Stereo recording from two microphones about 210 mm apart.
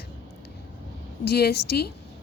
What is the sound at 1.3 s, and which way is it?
Speech, 50° left (ahead or behind).